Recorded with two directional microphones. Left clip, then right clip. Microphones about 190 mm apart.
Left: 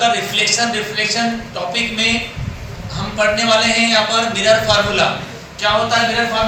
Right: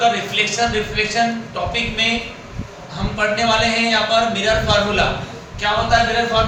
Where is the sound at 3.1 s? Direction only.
15° right (ahead or behind).